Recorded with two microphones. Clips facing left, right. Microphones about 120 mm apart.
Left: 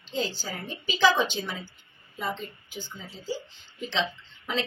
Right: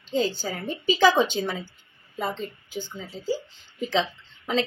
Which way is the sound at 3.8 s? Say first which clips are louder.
Right 4 dB; 40° right (ahead or behind).